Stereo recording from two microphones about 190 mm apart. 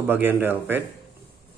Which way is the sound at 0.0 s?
10° right (ahead or behind).